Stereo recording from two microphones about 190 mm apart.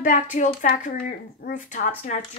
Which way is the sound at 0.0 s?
40° left (ahead or behind).